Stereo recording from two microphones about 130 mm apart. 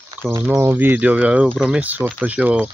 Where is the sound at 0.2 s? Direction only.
10° right (ahead or behind).